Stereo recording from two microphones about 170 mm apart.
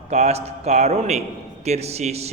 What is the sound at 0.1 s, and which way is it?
A man's voice, 40° right (ahead or behind).